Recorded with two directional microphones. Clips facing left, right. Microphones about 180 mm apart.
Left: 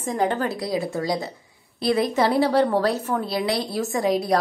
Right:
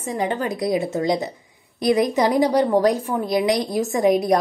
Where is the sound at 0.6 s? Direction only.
20° right (ahead or behind).